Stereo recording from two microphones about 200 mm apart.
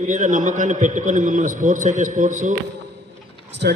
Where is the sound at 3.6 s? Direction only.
55° right (ahead or behind).